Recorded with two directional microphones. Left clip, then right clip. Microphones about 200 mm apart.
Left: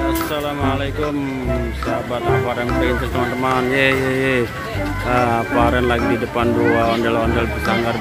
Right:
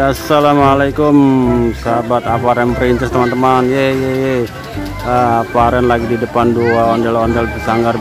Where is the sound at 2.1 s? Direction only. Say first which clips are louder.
Right 6 dB; 30° right (ahead or behind).